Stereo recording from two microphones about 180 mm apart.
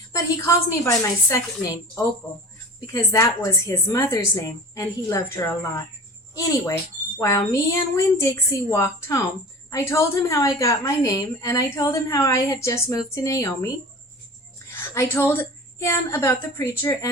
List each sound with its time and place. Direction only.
0.1 s a woman's voice: 15° left (ahead or behind)
2.8 s a woman's voice: 15° left (ahead or behind)
14.9 s a woman's voice: 10° left (ahead or behind)